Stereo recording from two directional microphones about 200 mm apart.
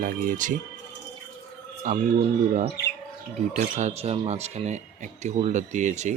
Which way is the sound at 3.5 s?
35° right (ahead or behind).